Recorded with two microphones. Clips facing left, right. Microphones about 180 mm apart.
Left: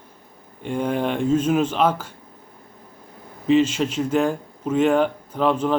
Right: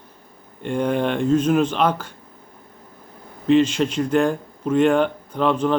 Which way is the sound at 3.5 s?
5° left (ahead or behind).